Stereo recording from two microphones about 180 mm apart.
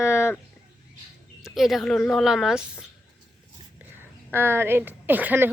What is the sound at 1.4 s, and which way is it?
A woman's voice, centre (ahead or behind).